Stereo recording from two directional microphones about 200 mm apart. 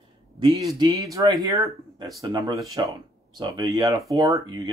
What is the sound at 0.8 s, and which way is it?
Speech, 15° right (ahead or behind).